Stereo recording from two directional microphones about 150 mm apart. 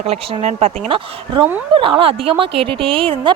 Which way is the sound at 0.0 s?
45° right (ahead or behind).